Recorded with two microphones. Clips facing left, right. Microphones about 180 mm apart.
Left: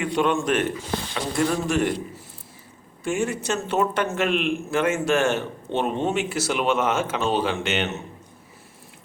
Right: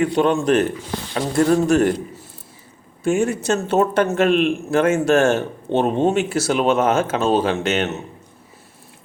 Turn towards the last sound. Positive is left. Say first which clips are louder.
# right 5 dB
turn(degrees=-40)  # may be behind; listen again after turning